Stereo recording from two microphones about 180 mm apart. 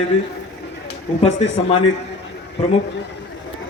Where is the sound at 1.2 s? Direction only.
30° left (ahead or behind).